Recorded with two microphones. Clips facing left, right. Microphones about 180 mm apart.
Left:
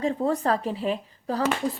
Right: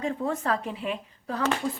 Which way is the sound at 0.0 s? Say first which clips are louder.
Left 4 dB; 35° left (ahead or behind).